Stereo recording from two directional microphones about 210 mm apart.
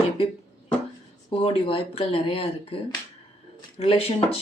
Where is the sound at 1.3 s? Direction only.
25° left (ahead or behind).